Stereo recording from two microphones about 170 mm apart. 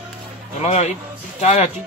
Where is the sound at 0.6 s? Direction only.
40° left (ahead or behind).